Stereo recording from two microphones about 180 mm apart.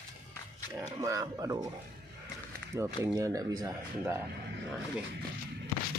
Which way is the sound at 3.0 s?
15° right (ahead or behind).